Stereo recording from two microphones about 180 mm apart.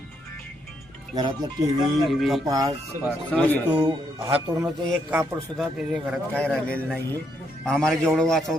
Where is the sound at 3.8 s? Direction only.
30° right (ahead or behind).